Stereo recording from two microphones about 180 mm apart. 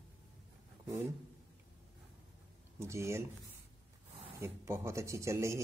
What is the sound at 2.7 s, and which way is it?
Speech, 15° right (ahead or behind).